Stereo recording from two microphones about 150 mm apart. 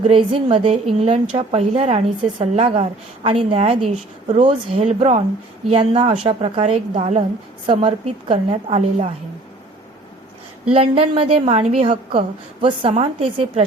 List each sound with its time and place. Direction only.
0.0 s a woman's voice: 35° right (ahead or behind)
10.8 s a woman's voice: 40° right (ahead or behind)